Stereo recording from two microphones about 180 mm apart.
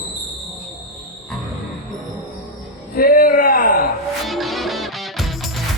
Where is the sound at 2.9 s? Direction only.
55° left (ahead or behind).